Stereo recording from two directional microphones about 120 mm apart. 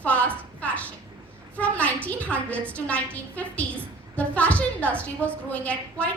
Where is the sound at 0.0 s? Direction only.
10° left (ahead or behind).